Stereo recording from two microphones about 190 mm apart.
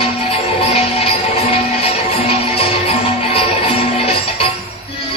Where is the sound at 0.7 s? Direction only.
30° left (ahead or behind).